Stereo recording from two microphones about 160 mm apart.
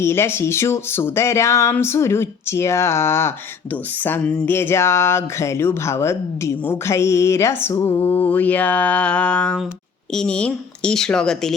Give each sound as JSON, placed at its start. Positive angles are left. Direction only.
{"t": 0.0, "sound": "speech", "side_deg": 15}